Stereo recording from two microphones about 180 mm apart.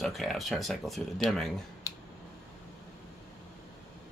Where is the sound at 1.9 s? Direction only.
20° left (ahead or behind).